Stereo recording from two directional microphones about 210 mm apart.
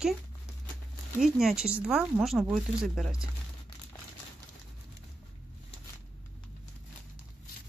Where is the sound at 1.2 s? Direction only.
Centre (ahead or behind).